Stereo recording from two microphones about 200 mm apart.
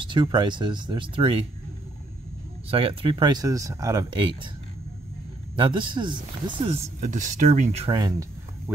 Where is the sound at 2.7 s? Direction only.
30° right (ahead or behind).